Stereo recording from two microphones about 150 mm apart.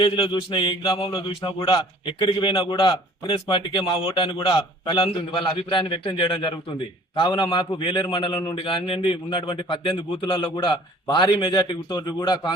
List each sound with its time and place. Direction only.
0.0 s a man's voice: 35° left (ahead or behind)